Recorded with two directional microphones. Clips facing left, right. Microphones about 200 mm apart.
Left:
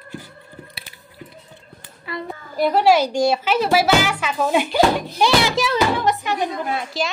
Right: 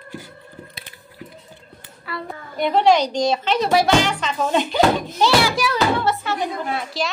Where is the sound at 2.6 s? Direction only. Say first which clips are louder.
Left 1 dB; 5° left (ahead or behind).